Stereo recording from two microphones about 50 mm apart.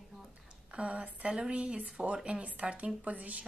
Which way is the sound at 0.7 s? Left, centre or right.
Right.